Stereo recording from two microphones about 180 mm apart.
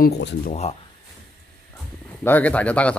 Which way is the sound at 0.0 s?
75° left (ahead or behind).